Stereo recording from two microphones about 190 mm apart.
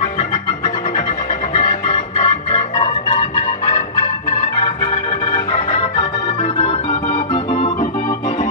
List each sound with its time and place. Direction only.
1.7 s organ: 30° left (ahead or behind)
5.2 s organ: 30° left (ahead or behind)